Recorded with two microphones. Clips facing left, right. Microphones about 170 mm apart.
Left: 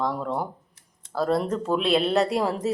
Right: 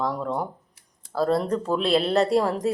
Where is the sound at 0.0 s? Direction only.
Centre (ahead or behind).